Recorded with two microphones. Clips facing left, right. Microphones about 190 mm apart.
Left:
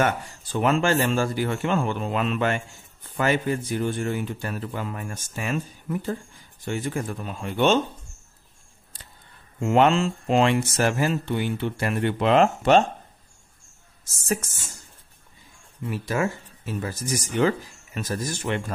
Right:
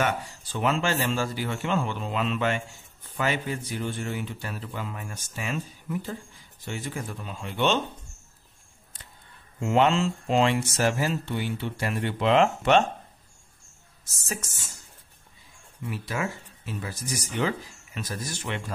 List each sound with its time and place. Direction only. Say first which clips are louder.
0.0 s speech: left 3 dB; 50° left (ahead or behind)
9.7 s speech: left 3 dB; 55° left (ahead or behind)
15.8 s speech: left 5 dB; 45° left (ahead or behind)